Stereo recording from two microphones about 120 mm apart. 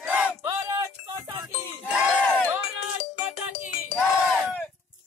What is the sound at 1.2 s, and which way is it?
Music, 35° right (ahead or behind).